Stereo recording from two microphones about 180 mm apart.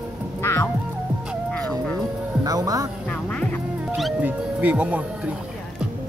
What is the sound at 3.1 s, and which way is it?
Music, 5° left (ahead or behind).